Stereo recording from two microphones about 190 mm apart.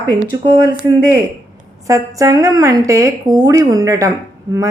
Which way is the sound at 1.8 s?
15° right (ahead or behind).